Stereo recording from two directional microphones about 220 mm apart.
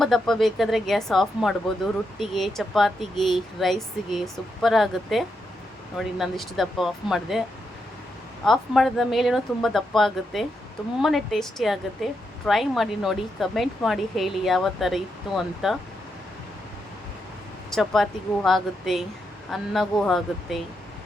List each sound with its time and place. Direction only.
0.0 s speech: centre (ahead or behind)
8.4 s speech: centre (ahead or behind)
17.7 s speech: centre (ahead or behind)